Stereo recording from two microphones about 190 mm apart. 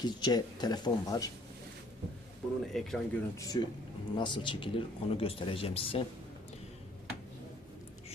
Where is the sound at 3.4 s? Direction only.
20° left (ahead or behind).